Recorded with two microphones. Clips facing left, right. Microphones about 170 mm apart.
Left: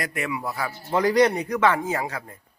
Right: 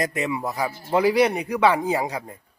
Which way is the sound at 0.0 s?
20° right (ahead or behind).